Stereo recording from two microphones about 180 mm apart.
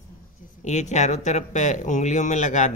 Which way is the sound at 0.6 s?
40° left (ahead or behind).